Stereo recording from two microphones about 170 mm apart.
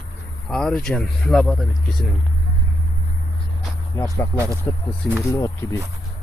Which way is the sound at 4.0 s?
15° left (ahead or behind).